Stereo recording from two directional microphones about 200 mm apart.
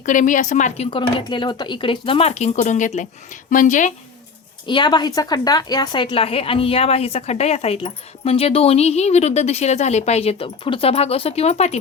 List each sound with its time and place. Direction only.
0.0 s speech: 40° left (ahead or behind)
0.9 s a woman's voice: 25° left (ahead or behind)
4.6 s a woman's voice: 25° left (ahead or behind)